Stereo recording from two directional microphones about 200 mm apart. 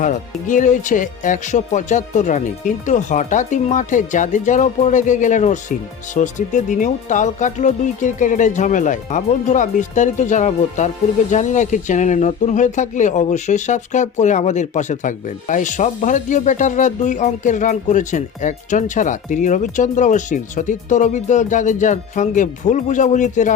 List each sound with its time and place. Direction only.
0.0 s speech: 40° left (ahead or behind)